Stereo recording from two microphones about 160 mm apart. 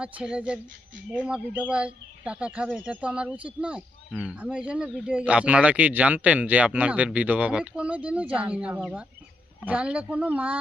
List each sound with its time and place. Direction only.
0.0 s speech: 5° right (ahead or behind)